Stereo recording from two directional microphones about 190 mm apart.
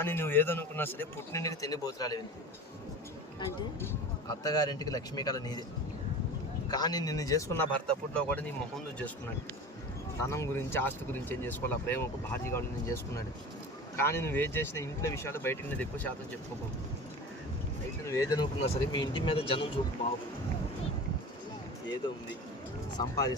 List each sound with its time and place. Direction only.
0.0 s a man's voice: 10° left (ahead or behind)
4.3 s speech: 20° left (ahead or behind)
6.7 s a man's voice: 20° left (ahead or behind)
10.2 s a man's voice: 15° left (ahead or behind)
18.0 s a man's voice: 15° left (ahead or behind)
22.0 s speech: 25° left (ahead or behind)